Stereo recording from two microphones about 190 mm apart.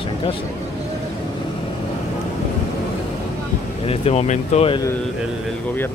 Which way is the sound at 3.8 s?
35° left (ahead or behind).